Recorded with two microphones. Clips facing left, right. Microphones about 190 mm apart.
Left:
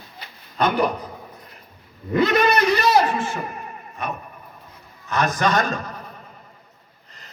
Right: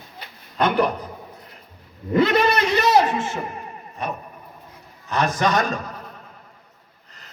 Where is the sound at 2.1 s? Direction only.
30° right (ahead or behind).